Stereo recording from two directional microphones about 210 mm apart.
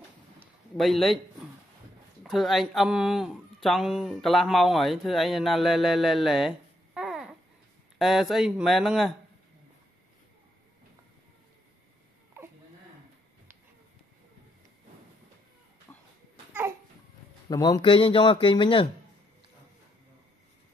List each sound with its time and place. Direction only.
0.7 s speech: centre (ahead or behind)
2.2 s speech: centre (ahead or behind)
15.9 s a sound: 10° left (ahead or behind)
17.5 s speech: 20° left (ahead or behind)